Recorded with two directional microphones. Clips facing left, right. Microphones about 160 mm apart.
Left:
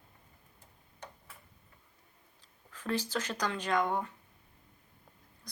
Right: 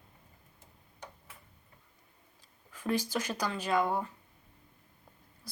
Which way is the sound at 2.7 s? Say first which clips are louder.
Right 2 dB; 10° right (ahead or behind).